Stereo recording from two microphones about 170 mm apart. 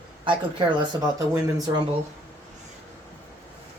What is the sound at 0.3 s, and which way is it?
Speech, 30° right (ahead or behind).